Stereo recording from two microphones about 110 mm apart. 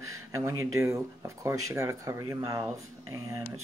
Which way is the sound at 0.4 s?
25° right (ahead or behind).